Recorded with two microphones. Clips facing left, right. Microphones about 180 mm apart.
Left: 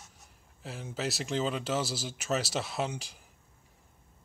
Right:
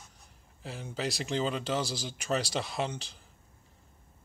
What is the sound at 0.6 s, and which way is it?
Speech, centre (ahead or behind).